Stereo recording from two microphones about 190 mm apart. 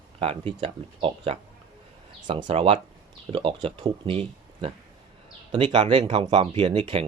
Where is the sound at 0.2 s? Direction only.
30° right (ahead or behind).